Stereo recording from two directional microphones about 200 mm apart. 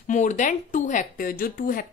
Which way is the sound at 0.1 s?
35° left (ahead or behind).